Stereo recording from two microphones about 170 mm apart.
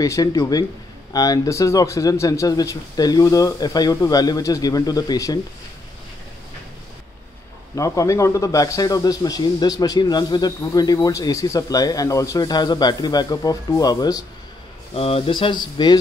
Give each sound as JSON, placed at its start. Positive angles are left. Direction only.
{"t": 0.0, "sound": "a man's voice", "side_deg": 20}
{"t": 7.7, "sound": "a man's voice", "side_deg": 20}
{"t": 15.0, "sound": "a man's voice", "side_deg": 35}